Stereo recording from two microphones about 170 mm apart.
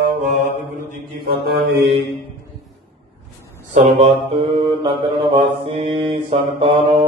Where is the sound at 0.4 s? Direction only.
45° left (ahead or behind).